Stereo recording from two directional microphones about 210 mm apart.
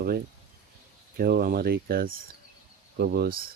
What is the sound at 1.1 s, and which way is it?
Speech, 45° right (ahead or behind).